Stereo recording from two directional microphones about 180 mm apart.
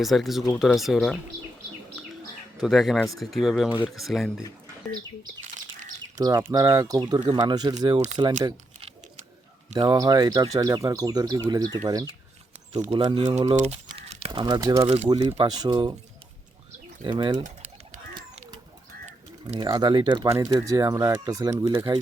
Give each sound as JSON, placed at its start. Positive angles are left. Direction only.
{"t": 0.0, "sound": "speech", "side_deg": 0}
{"t": 2.6, "sound": "speech", "side_deg": 0}
{"t": 6.1, "sound": "speech", "side_deg": -20}
{"t": 13.8, "sound": "a sound", "side_deg": -30}
{"t": 14.8, "sound": "speech", "side_deg": -35}
{"t": 15.4, "sound": "speech", "side_deg": -20}
{"t": 17.0, "sound": "speech", "side_deg": -25}
{"t": 18.1, "sound": "children playing", "side_deg": -25}
{"t": 19.5, "sound": "speech", "side_deg": -20}